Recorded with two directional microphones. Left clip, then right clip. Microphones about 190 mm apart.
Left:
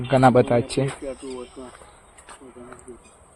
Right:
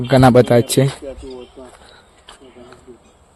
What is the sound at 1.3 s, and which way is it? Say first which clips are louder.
Speech: right 1 dB; 50° left (ahead or behind).